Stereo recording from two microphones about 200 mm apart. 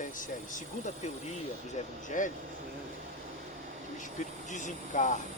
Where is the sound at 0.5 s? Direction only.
35° left (ahead or behind).